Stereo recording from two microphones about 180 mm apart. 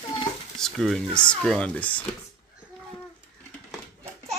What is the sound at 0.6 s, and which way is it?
Speech, centre (ahead or behind).